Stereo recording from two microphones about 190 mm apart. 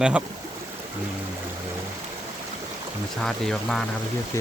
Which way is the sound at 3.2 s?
Centre (ahead or behind).